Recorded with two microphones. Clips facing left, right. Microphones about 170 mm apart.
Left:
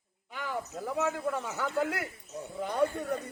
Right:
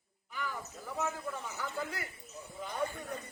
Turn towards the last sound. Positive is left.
turn(degrees=65)  # may be behind; listen again after turning